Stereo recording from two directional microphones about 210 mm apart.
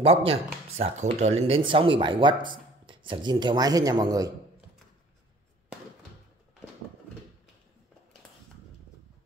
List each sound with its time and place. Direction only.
0.0 s speech: 30° right (ahead or behind)